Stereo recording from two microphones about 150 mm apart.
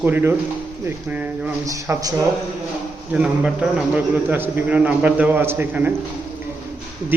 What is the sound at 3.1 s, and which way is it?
A man's voice, 10° right (ahead or behind).